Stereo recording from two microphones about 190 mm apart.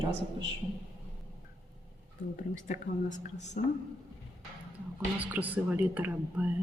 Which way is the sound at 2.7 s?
40° left (ahead or behind).